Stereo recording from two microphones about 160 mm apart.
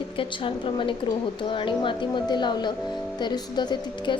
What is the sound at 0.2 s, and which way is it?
A woman's voice, 30° left (ahead or behind).